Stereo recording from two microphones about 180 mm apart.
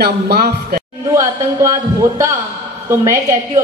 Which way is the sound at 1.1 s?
15° right (ahead or behind).